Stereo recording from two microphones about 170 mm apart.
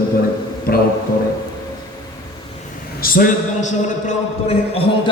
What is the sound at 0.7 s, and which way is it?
Speech, 65° left (ahead or behind).